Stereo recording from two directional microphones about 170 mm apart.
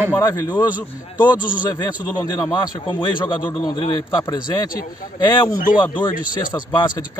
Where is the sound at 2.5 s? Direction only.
30° left (ahead or behind).